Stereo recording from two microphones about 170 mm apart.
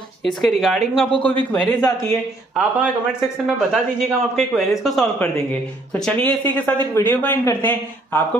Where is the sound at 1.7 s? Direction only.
20° left (ahead or behind).